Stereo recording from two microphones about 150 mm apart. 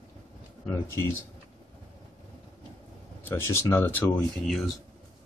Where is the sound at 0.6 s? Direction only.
15° left (ahead or behind).